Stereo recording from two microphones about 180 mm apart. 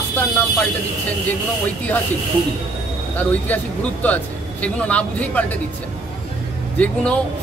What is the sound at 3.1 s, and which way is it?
Speech, 10° left (ahead or behind).